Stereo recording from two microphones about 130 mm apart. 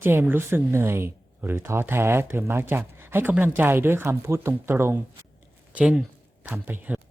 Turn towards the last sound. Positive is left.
turn(degrees=-15)  # may be behind; listen again after turning